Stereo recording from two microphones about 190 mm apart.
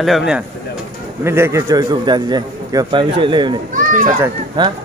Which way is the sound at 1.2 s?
15° right (ahead or behind).